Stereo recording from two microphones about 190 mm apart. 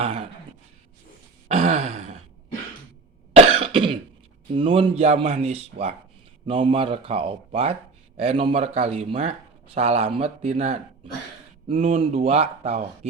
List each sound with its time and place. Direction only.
0.0 s a sound: 30° right (ahead or behind)
1.5 s gasp: 35° right (ahead or behind)
3.3 s cough: 30° right (ahead or behind)
4.5 s speech: 30° right (ahead or behind)